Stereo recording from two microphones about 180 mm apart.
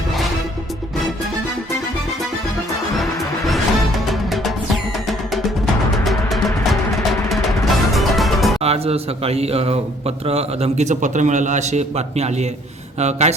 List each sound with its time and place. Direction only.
2.9 s music: centre (ahead or behind)
7.3 s music: centre (ahead or behind)
8.6 s a man's voice: 35° right (ahead or behind)